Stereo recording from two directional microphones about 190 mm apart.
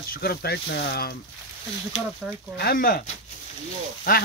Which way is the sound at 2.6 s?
50° left (ahead or behind).